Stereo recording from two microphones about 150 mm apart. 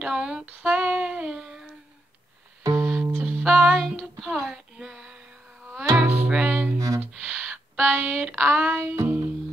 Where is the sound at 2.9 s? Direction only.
10° right (ahead or behind).